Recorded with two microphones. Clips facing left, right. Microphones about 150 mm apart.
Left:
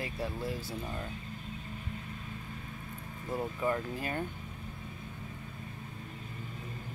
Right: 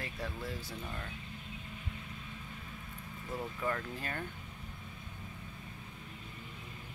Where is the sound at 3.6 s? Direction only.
15° left (ahead or behind).